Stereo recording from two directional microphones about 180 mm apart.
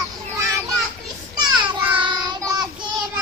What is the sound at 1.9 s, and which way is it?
Child singing, 25° right (ahead or behind).